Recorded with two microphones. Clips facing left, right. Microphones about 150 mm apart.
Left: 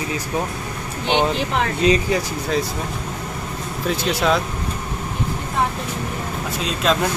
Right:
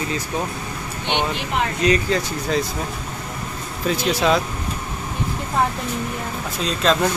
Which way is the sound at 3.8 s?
Centre (ahead or behind).